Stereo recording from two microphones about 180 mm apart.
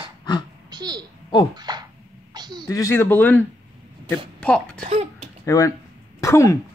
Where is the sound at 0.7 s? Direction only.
20° right (ahead or behind).